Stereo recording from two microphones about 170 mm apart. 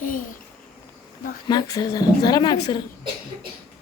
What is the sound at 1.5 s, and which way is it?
Speech, 20° left (ahead or behind).